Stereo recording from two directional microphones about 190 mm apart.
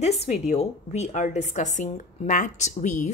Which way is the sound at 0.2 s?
35° left (ahead or behind).